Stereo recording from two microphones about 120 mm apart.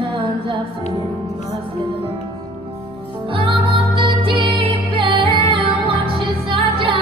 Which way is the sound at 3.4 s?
45° right (ahead or behind).